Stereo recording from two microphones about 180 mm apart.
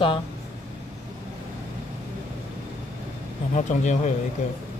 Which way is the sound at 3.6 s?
40° left (ahead or behind).